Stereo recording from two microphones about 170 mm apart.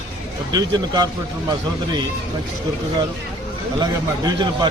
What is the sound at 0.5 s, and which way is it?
Speech, 25° right (ahead or behind).